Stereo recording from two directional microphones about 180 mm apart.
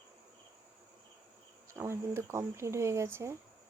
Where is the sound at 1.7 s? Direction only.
15° right (ahead or behind).